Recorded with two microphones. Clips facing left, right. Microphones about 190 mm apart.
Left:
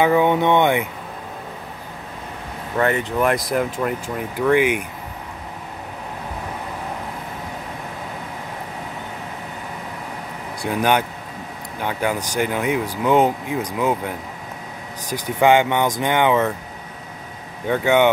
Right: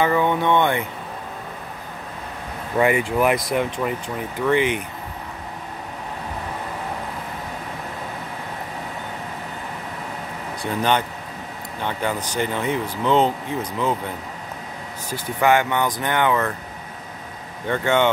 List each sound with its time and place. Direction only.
0.0 s speech: 15° left (ahead or behind)
2.8 s speech: 10° right (ahead or behind); by 4.8 s 10° left (ahead or behind)
10.6 s speech: 10° left (ahead or behind)
17.6 s speech: 10° left (ahead or behind)